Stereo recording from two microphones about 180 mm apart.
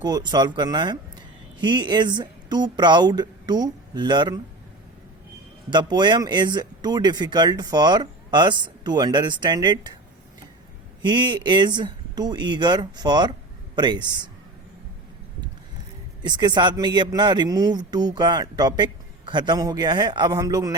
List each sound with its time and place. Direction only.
0.0 s a man's voice: 25° right (ahead or behind)
5.7 s a man's voice: 25° right (ahead or behind)
11.0 s a man's voice: 25° right (ahead or behind)
16.2 s a man's voice: 25° right (ahead or behind)